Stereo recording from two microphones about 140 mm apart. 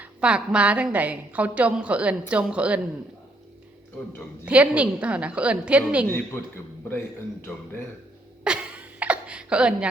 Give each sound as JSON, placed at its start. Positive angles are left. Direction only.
{"t": 0.0, "sound": "a woman's voice", "side_deg": -10}
{"t": 4.4, "sound": "a woman's voice", "side_deg": -10}
{"t": 6.1, "sound": "speech", "side_deg": 15}
{"t": 8.4, "sound": "a sound", "side_deg": -10}